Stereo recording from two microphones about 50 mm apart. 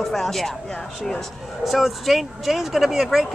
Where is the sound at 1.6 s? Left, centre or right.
Centre.